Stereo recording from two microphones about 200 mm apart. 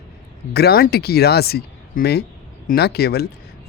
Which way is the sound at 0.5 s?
50° left (ahead or behind).